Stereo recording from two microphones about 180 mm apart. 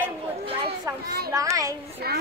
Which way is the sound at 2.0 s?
60° right (ahead or behind).